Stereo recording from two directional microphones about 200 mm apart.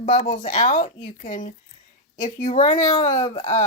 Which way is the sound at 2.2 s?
40° left (ahead or behind).